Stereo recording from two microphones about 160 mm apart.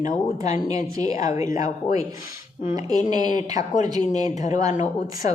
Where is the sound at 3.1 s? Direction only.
25° right (ahead or behind).